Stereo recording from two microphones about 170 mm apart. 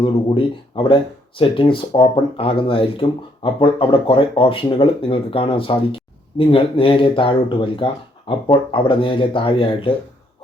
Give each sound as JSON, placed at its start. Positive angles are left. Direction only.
{"t": 0.0, "sound": "speech", "side_deg": 30}